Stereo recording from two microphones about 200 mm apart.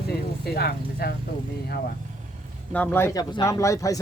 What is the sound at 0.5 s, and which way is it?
Speech, 50° left (ahead or behind).